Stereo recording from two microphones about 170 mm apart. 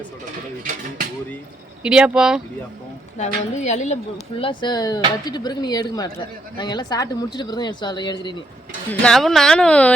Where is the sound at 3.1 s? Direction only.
45° left (ahead or behind); by 8.4 s 25° left (ahead or behind).